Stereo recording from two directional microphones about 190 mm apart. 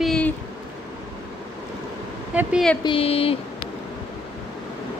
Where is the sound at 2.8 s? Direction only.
30° left (ahead or behind).